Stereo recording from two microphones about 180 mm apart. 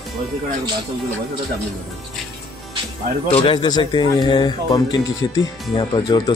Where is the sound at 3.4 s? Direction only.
25° left (ahead or behind).